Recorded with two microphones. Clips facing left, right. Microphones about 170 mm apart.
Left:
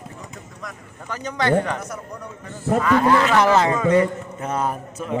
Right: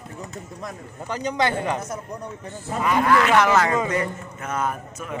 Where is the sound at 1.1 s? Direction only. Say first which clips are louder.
Left 3 dB; 15° right (ahead or behind).